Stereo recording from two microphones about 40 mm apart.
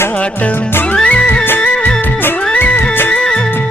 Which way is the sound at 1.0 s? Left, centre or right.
Left.